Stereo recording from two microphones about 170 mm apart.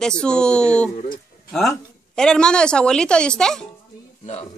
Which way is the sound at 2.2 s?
5° left (ahead or behind).